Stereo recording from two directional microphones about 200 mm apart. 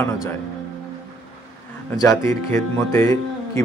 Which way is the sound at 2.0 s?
15° left (ahead or behind).